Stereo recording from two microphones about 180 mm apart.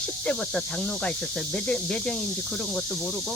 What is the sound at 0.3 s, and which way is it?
Speech, 5° left (ahead or behind).